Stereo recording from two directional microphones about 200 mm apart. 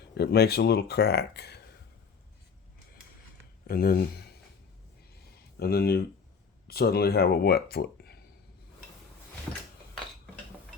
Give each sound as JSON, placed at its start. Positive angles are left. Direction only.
{"t": 0.1, "sound": "speech", "side_deg": 55}
{"t": 3.7, "sound": "speech", "side_deg": 50}
{"t": 5.5, "sound": "speech", "side_deg": 50}